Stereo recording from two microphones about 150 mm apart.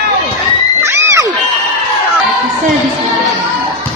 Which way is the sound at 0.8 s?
15° right (ahead or behind).